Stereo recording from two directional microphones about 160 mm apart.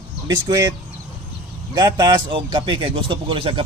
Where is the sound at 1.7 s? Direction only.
25° right (ahead or behind).